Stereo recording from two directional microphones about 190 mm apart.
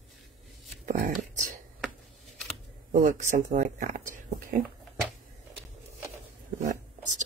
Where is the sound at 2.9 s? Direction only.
40° right (ahead or behind).